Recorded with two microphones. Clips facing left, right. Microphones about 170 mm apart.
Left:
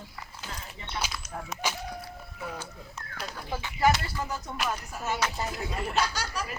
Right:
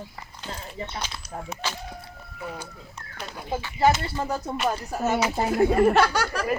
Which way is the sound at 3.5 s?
25° right (ahead or behind).